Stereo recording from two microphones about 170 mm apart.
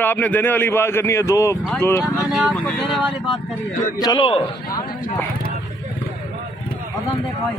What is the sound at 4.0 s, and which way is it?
Speech, 25° left (ahead or behind).